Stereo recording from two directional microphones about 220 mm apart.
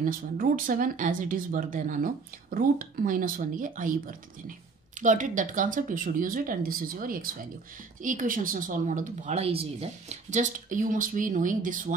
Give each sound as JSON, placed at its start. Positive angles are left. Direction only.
{"t": 0.0, "sound": "speech", "side_deg": -40}